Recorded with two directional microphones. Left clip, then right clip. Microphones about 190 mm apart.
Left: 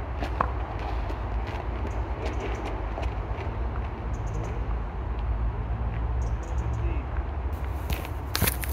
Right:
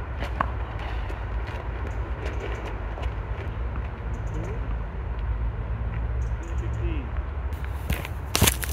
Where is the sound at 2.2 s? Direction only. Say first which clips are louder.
Left 1 dB; 20° left (ahead or behind).